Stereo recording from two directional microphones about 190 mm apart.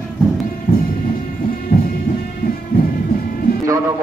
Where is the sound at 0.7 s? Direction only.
50° left (ahead or behind).